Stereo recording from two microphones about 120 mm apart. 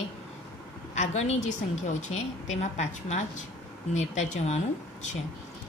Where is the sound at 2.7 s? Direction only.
75° left (ahead or behind).